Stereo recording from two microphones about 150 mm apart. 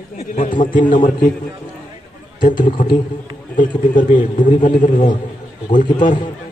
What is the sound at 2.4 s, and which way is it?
A man's voice, 60° left (ahead or behind).